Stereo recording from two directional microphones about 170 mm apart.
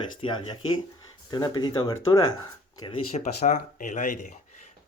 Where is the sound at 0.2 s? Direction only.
30° left (ahead or behind).